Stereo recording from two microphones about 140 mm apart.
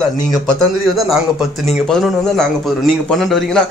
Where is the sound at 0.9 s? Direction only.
Centre (ahead or behind).